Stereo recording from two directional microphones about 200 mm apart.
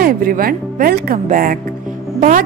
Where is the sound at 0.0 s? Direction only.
45° right (ahead or behind).